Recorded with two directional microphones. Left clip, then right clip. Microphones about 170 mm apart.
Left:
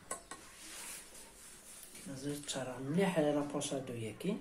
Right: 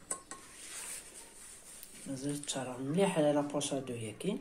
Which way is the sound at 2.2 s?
25° right (ahead or behind).